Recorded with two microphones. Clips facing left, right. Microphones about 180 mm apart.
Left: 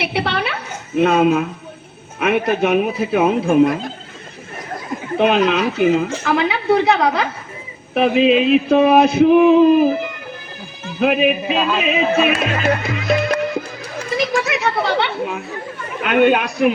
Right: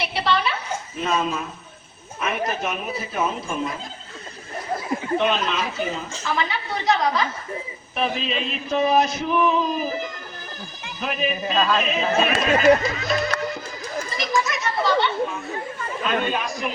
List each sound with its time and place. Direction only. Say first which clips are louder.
0.0 s a woman's voice: left 2 dB; 60° left (ahead or behind)
2.1 s music: left 10 dB; 65° left (ahead or behind)
2.5 s a woman's voice: left 11 dB; 65° left (ahead or behind)
5.1 s a woman's voice: left 8 dB; 60° left (ahead or behind)
11.5 s speech: left 2 dB; 10° left (ahead or behind)
11.8 s a woman's voice: left 5 dB; 65° left (ahead or behind)
12.8 s music: left 5 dB; 55° left (ahead or behind)
14.1 s chatter: left 7 dB; 60° left (ahead or behind)
16.0 s a woman's voice: left 10 dB; 65° left (ahead or behind)